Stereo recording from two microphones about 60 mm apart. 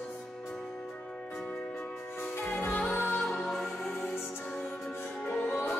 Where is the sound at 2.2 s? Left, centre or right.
Left.